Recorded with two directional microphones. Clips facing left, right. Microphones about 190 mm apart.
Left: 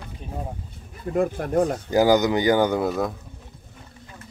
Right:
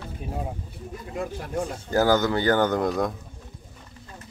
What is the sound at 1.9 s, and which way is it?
Speech, 15° left (ahead or behind).